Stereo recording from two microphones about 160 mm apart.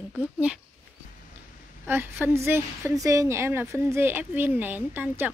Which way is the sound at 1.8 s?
15° right (ahead or behind).